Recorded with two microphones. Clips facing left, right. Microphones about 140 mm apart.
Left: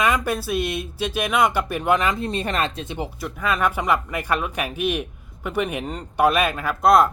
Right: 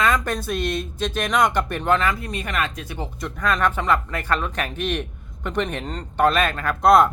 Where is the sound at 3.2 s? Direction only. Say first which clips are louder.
Right 1 dB; 5° left (ahead or behind).